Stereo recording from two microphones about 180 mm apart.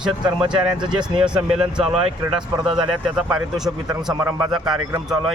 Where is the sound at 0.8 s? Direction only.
5° right (ahead or behind).